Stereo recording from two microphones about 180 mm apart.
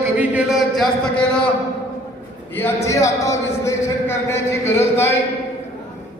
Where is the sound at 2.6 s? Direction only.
15° left (ahead or behind).